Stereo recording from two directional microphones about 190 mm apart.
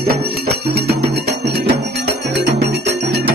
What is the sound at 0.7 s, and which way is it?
Music, 60° right (ahead or behind).